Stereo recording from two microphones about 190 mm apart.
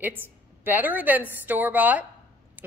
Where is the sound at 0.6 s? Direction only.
10° right (ahead or behind).